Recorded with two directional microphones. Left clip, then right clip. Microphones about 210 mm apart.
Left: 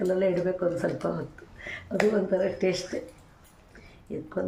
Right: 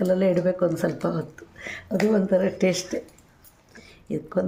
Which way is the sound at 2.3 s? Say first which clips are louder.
Right 4 dB; 50° right (ahead or behind).